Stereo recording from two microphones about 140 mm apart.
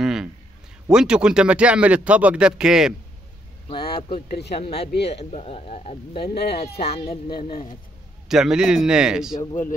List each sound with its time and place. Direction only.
0.0 s a sound: 5° right (ahead or behind)
0.8 s a man's voice: 5° right (ahead or behind)
3.6 s speech: 40° left (ahead or behind)
8.3 s speech: 5° right (ahead or behind)